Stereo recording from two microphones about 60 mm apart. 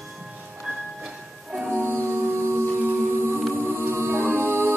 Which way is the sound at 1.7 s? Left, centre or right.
Right.